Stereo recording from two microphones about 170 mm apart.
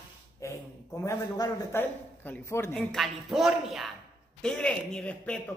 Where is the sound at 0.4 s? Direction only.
15° left (ahead or behind).